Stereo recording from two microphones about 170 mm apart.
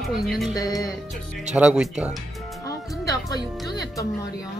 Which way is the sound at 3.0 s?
20° left (ahead or behind).